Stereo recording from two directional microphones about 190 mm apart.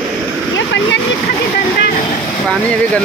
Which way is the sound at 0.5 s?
70° left (ahead or behind).